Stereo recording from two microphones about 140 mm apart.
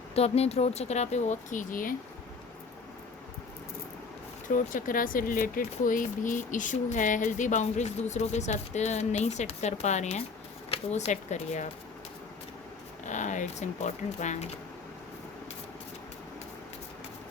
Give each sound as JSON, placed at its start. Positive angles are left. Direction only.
{"t": 0.1, "sound": "speech", "side_deg": 45}
{"t": 4.4, "sound": "speech", "side_deg": 75}
{"t": 13.1, "sound": "speech", "side_deg": 60}